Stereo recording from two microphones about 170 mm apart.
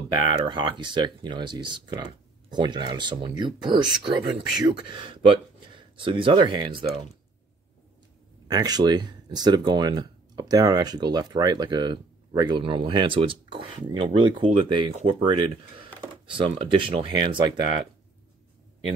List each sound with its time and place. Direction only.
0.1 s speech: 25° right (ahead or behind)
8.5 s speech: 25° right (ahead or behind)